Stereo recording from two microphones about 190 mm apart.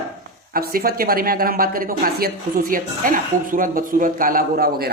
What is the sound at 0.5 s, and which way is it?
Speech, 50° right (ahead or behind).